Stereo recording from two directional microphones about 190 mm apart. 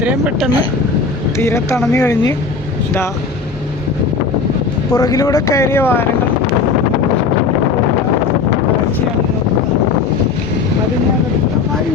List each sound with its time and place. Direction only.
0.0 s speech: 5° right (ahead or behind)
1.4 s speech: 15° left (ahead or behind)
4.9 s speech: 20° left (ahead or behind)